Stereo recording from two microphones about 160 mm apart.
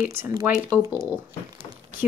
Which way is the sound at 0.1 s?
15° right (ahead or behind).